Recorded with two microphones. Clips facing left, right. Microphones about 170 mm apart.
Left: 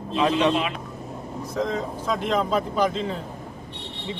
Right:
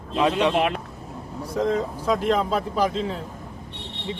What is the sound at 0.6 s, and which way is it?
Speech, 55° right (ahead or behind).